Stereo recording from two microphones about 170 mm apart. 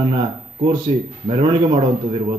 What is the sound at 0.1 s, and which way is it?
A man's voice, 30° right (ahead or behind).